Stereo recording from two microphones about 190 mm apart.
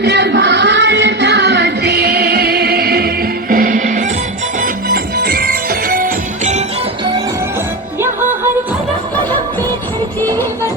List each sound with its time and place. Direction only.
0.0 s music: 65° right (ahead or behind); by 4.0 s 45° right (ahead or behind)
4.6 s music: 55° right (ahead or behind)